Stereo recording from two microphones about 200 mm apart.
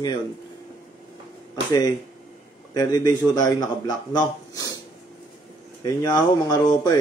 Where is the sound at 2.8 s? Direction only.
20° left (ahead or behind).